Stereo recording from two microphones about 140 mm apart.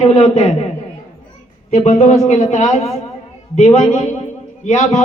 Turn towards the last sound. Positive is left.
turn(degrees=55)  # may be behind; listen again after turning